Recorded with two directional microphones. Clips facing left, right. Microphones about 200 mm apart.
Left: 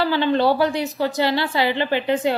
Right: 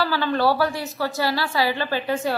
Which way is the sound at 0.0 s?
20° left (ahead or behind).